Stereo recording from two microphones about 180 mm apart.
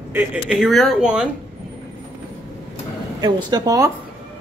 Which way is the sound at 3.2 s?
20° right (ahead or behind).